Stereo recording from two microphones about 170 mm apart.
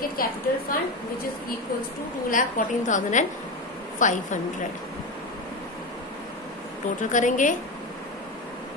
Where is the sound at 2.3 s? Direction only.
50° left (ahead or behind).